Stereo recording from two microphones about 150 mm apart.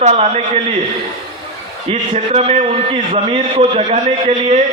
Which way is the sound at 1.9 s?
45° right (ahead or behind).